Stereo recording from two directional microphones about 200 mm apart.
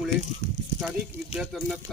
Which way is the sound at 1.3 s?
Centre (ahead or behind).